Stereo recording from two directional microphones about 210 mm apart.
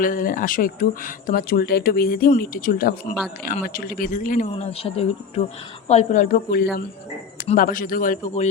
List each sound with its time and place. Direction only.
0.0 s speech: 40° left (ahead or behind)